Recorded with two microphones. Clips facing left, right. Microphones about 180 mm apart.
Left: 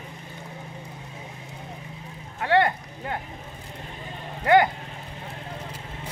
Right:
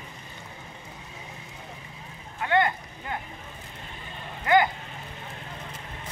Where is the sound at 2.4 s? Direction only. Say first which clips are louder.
Left 3 dB; 45° left (ahead or behind).